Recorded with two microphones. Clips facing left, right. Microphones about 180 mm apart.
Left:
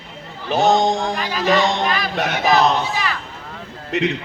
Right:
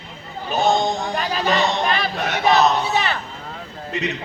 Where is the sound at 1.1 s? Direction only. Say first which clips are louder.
Right 1 dB; 35° right (ahead or behind).